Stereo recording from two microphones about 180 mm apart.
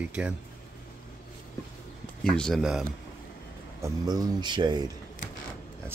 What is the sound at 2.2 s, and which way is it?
Speech, 5° left (ahead or behind).